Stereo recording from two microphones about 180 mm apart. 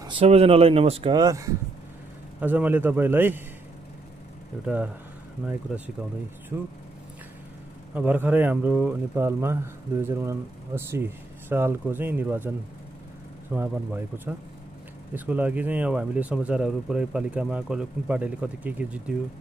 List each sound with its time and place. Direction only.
0.0 s speech: 30° right (ahead or behind); by 3.4 s 10° right (ahead or behind)
4.6 s speech: 10° right (ahead or behind)
7.9 s speech: 10° right (ahead or behind)